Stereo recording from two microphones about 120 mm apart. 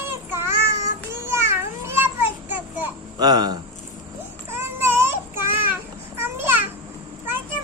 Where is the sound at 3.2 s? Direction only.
35° right (ahead or behind).